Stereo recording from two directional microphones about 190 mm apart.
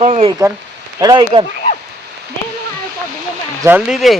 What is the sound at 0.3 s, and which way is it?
Speech, 15° right (ahead or behind).